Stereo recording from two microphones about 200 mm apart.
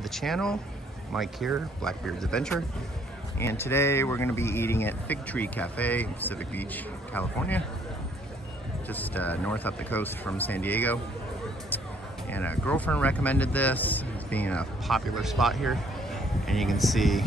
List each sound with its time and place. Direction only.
0.0 s speech: centre (ahead or behind)
8.8 s speech: 10° left (ahead or behind)
12.3 s speech: 10° left (ahead or behind)